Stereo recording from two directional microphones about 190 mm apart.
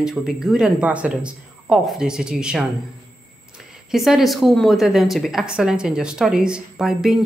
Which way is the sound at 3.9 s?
Centre (ahead or behind).